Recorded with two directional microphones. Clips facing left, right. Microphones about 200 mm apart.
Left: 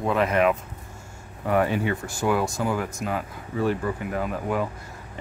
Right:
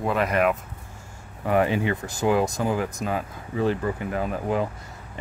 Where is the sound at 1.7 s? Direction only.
20° right (ahead or behind).